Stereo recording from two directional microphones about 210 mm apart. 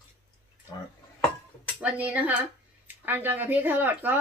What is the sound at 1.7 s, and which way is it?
Speech, 5° right (ahead or behind).